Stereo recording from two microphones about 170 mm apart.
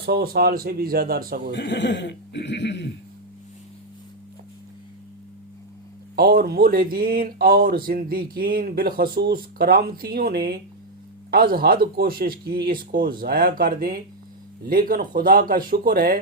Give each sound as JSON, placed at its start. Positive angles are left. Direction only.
{"t": 0.0, "sound": "speech", "side_deg": -65}
{"t": 1.5, "sound": "speech", "side_deg": 90}
{"t": 6.1, "sound": "speech", "side_deg": -65}